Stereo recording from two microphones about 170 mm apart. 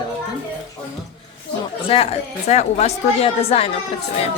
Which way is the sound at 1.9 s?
35° left (ahead or behind).